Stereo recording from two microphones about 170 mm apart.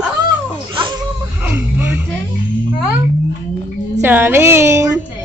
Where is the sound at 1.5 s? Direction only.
15° right (ahead or behind).